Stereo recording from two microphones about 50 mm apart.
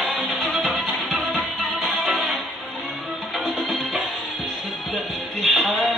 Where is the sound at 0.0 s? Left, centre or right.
Centre.